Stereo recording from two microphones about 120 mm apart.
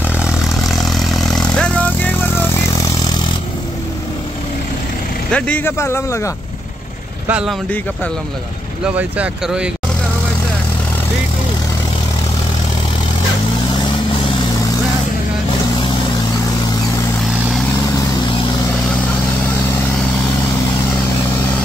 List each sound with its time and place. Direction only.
0.2 s vehicle: 5° right (ahead or behind); by 2.6 s 15° left (ahead or behind)
5.3 s a man's voice: 15° left (ahead or behind)
7.2 s speech: 10° right (ahead or behind)
8.8 s speech: 10° right (ahead or behind)